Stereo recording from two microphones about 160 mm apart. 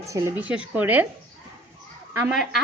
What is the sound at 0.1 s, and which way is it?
Speech, 15° right (ahead or behind).